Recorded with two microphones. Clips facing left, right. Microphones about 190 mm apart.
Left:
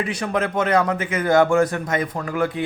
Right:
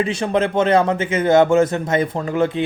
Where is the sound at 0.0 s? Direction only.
25° right (ahead or behind).